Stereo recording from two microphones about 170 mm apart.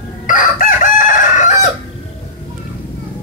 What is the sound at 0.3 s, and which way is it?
Chicken, 50° left (ahead or behind).